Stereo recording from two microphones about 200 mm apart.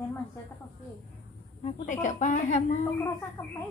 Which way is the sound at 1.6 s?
40° left (ahead or behind).